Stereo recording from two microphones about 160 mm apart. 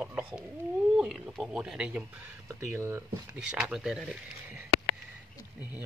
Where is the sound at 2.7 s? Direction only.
15° right (ahead or behind).